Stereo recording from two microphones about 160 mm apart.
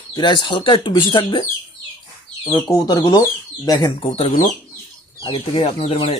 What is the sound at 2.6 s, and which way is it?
Speech, 25° left (ahead or behind).